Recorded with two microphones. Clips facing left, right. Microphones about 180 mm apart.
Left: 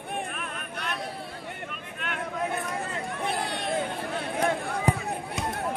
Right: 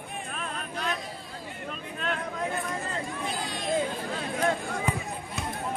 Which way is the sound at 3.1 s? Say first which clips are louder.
Left 3 dB; 60° left (ahead or behind).